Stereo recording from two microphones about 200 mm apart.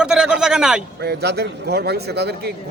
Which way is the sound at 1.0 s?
55° right (ahead or behind).